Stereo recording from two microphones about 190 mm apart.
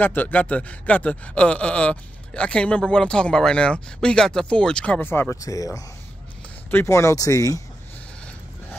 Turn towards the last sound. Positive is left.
turn(degrees=15)  # may be behind; listen again after turning